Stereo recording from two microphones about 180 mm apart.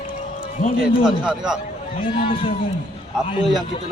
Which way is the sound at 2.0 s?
30° left (ahead or behind).